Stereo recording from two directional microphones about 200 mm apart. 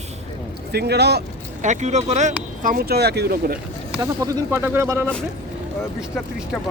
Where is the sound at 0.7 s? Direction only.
55° right (ahead or behind).